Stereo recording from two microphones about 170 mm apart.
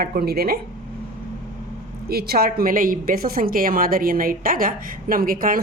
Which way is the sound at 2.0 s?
65° right (ahead or behind).